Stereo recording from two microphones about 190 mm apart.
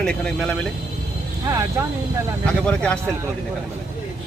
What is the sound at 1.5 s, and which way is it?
Speech, 15° right (ahead or behind).